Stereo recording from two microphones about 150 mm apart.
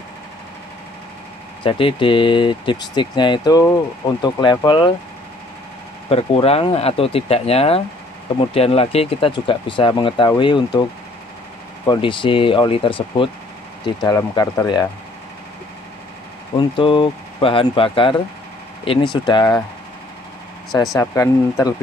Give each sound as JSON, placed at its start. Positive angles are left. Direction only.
{"t": 1.6, "sound": "speech", "side_deg": 35}
{"t": 6.0, "sound": "speech", "side_deg": 40}
{"t": 11.8, "sound": "speech", "side_deg": 30}
{"t": 16.5, "sound": "speech", "side_deg": 35}
{"t": 19.2, "sound": "speech", "side_deg": 25}
{"t": 21.0, "sound": "speech", "side_deg": 20}